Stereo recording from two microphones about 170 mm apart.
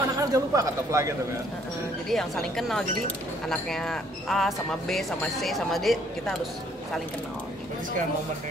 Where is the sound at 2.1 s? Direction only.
Centre (ahead or behind).